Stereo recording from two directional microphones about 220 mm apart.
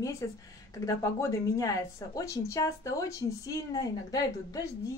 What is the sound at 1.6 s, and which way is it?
Speech, 15° left (ahead or behind).